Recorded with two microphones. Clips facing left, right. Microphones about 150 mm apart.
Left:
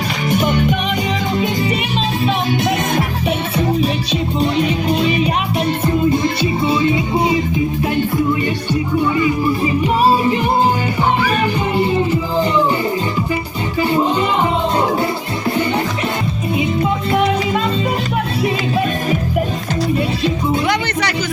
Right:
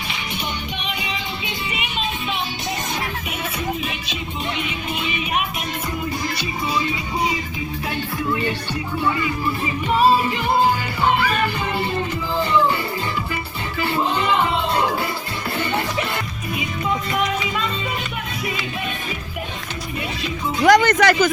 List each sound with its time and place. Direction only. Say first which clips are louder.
0.3 s music: left 16 dB; 45° left (ahead or behind)
4.4 s music: left 11 dB; 35° left (ahead or behind)
6.1 s music: left 10 dB; 25° left (ahead or behind)
10.0 s music: left 2 dB; 15° left (ahead or behind)
12.4 s music: left 2 dB; 15° left (ahead or behind)
13.8 s music: left 5 dB; 20° left (ahead or behind)
17.1 s music: left 7 dB; 30° left (ahead or behind)
20.7 s music: right 5 dB; 45° right (ahead or behind)